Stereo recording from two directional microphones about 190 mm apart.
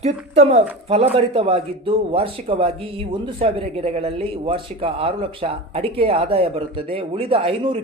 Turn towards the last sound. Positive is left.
turn(degrees=-30)  # may be behind; listen again after turning